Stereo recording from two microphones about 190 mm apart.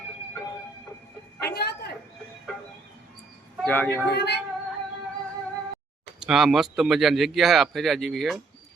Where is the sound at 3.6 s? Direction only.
10° left (ahead or behind).